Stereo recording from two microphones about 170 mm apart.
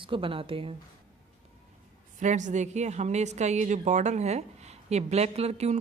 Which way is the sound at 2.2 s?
45° right (ahead or behind).